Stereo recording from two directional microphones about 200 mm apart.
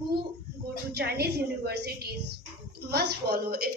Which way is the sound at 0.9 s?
55° right (ahead or behind).